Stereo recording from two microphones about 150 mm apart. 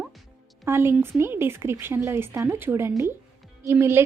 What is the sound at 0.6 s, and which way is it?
A woman's voice, 15° right (ahead or behind).